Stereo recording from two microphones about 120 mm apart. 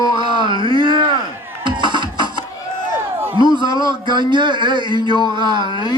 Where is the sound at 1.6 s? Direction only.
40° right (ahead or behind).